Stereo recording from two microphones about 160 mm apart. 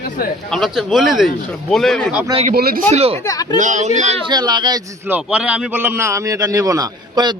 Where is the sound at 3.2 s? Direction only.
25° left (ahead or behind).